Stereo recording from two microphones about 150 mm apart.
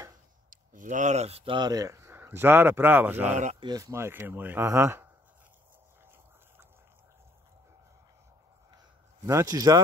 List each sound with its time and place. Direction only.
0.5 s speech: 60° right (ahead or behind); by 3.3 s 10° right (ahead or behind)
3.5 s speech: 25° right (ahead or behind)
9.2 s speech: 20° right (ahead or behind)